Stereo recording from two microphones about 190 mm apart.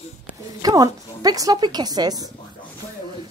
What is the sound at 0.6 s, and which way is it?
A woman's voice, 20° right (ahead or behind).